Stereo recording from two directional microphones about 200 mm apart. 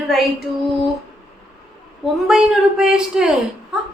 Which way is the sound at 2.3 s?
5° right (ahead or behind).